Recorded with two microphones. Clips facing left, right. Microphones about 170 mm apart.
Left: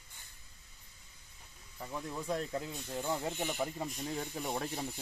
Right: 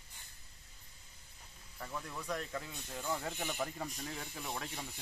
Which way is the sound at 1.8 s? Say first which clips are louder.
Left 3 dB; 20° left (ahead or behind).